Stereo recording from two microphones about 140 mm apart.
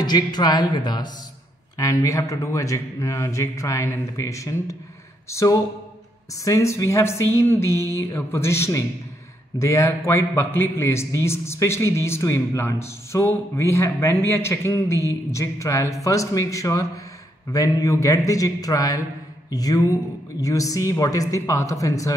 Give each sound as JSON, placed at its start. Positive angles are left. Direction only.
{"t": 0.0, "sound": "a woman's voice", "side_deg": 30}